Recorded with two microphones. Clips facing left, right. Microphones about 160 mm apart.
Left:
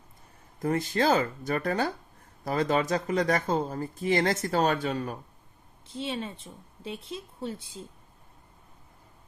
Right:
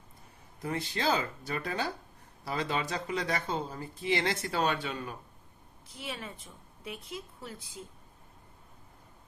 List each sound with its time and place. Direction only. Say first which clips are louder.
0.6 s speech: left 6 dB; 45° left (ahead or behind)
5.9 s a woman's voice: left 8 dB; 25° left (ahead or behind)